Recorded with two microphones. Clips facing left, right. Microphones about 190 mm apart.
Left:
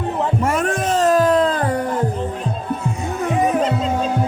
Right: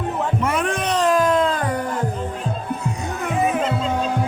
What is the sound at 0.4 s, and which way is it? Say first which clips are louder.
Music: left 2 dB; 45° left (ahead or behind).